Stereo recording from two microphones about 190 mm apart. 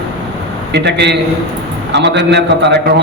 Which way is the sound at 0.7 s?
65° right (ahead or behind).